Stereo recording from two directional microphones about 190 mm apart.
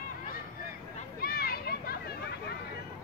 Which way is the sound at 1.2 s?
55° left (ahead or behind).